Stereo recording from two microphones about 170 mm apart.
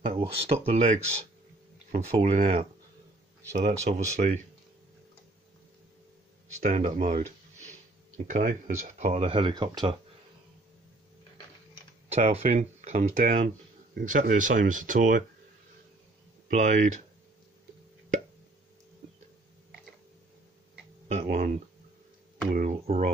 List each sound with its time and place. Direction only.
0.0 s speech: 35° right (ahead or behind)
3.8 s speech: 45° right (ahead or behind)
6.6 s speech: 50° right (ahead or behind)
8.3 s speech: 45° right (ahead or behind); by 9.9 s 25° right (ahead or behind)
12.1 s speech: 40° right (ahead or behind)
16.4 s speech: 45° right (ahead or behind)
21.2 s speech: 50° right (ahead or behind)
22.5 s a sound: 55° right (ahead or behind)
22.8 s speech: 40° right (ahead or behind)